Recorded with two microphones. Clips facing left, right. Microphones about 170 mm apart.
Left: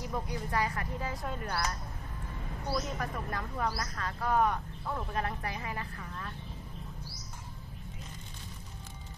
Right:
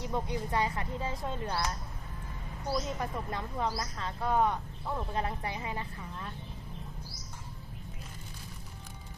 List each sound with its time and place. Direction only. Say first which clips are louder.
0.1 s speech: right 2 dB; 25° right (ahead or behind)
2.7 s speech: right 1 dB; 25° right (ahead or behind)